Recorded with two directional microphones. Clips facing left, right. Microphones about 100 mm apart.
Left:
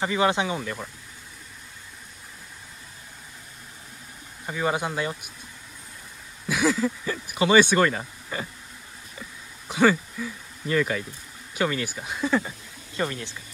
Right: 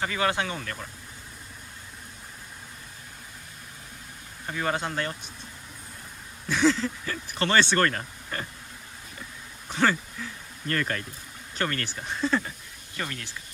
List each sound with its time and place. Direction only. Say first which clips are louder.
0.0 s speech: left 4 dB; 20° left (ahead or behind)
4.5 s speech: left 3 dB; 10° left (ahead or behind)
6.5 s speech: even; 10° left (ahead or behind)
9.7 s speech: left 4 dB; 10° left (ahead or behind)
12.9 s speech: left 6 dB; 20° left (ahead or behind)